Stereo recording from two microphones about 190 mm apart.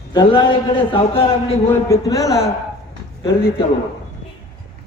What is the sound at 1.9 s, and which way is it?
Speech, 15° left (ahead or behind).